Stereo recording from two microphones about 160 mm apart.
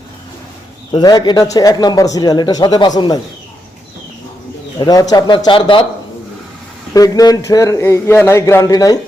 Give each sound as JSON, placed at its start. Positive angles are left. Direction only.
{"t": 0.9, "sound": "speech", "side_deg": 25}
{"t": 4.8, "sound": "speech", "side_deg": 25}
{"t": 6.9, "sound": "speech", "side_deg": 20}